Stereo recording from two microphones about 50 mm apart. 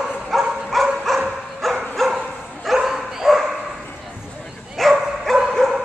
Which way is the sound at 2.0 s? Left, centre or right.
Centre.